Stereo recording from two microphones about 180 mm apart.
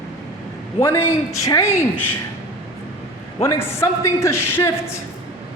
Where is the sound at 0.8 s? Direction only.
15° left (ahead or behind).